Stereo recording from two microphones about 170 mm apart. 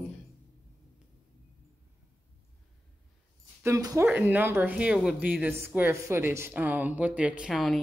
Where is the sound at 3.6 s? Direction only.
20° right (ahead or behind).